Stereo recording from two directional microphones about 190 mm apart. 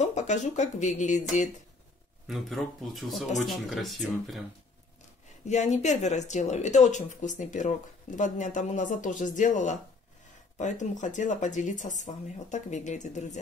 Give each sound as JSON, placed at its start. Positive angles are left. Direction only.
{"t": 0.0, "sound": "speech", "side_deg": 40}
{"t": 2.2, "sound": "speech", "side_deg": 0}
{"t": 5.5, "sound": "speech", "side_deg": 35}